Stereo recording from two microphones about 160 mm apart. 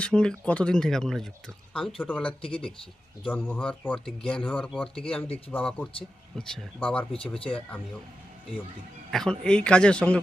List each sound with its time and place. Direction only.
0.0 s speech: 5° left (ahead or behind)
7.1 s speech: 35° left (ahead or behind)
9.0 s speech: 5° left (ahead or behind)